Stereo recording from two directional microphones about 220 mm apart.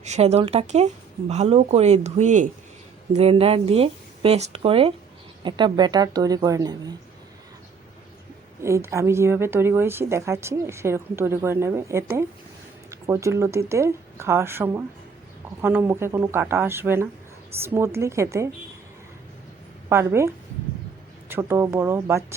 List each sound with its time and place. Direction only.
0.0 s a woman's voice: 30° right (ahead or behind)
8.6 s a woman's voice: 15° right (ahead or behind)
19.9 s a woman's voice: 10° right (ahead or behind)